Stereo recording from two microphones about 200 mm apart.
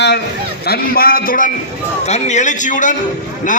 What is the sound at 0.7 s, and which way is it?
Speech, 50° left (ahead or behind).